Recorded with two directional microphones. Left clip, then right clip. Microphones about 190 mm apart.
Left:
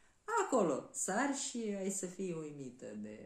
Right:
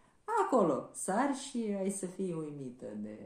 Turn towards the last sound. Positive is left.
turn(degrees=5)  # may be behind; listen again after turning